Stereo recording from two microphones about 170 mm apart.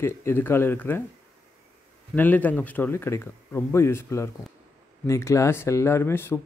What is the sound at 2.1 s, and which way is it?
Speech, 10° left (ahead or behind).